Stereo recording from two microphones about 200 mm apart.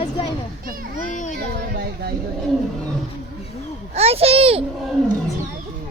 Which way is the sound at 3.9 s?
30° right (ahead or behind).